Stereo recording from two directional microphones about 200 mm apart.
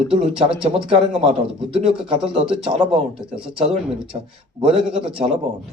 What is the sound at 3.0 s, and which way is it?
Speech, 5° right (ahead or behind).